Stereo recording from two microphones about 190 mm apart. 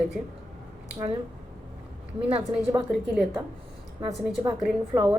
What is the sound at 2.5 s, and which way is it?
Speech, 5° right (ahead or behind).